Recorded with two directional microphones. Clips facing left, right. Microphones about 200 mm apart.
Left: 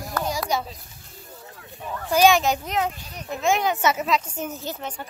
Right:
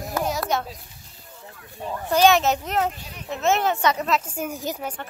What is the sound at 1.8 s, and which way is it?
Speech, 20° right (ahead or behind).